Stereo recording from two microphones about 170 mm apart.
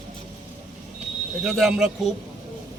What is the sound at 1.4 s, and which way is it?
Speech, centre (ahead or behind).